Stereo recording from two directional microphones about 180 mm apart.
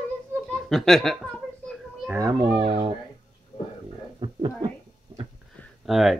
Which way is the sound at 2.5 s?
30° right (ahead or behind).